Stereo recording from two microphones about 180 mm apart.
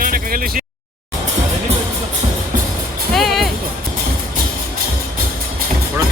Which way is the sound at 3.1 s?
Centre (ahead or behind).